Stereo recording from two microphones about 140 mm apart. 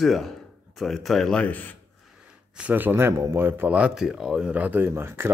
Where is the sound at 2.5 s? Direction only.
10° right (ahead or behind).